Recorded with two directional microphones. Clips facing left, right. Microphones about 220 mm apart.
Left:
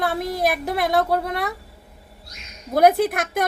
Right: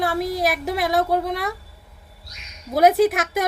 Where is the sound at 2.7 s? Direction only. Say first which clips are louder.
Right 1 dB; centre (ahead or behind).